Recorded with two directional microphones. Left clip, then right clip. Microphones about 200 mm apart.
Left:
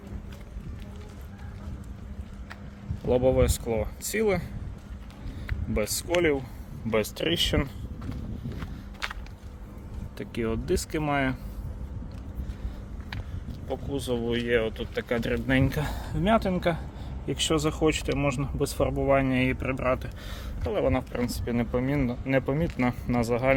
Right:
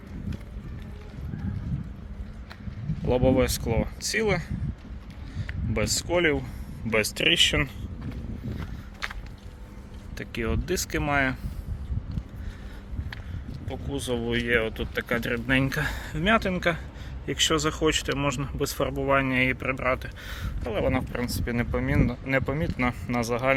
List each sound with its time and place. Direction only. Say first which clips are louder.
3.1 s speech: even; 5° left (ahead or behind)
5.7 s speech: right 1 dB; 10° left (ahead or behind)
9.0 s a sound: even; 5° right (ahead or behind)
10.2 s speech: even; 10° left (ahead or behind)
13.7 s speech: left 1 dB; 10° left (ahead or behind)